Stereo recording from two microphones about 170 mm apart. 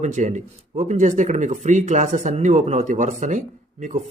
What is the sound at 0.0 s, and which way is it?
Speech, 45° right (ahead or behind).